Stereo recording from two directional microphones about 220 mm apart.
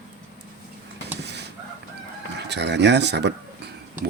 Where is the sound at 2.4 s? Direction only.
50° right (ahead or behind).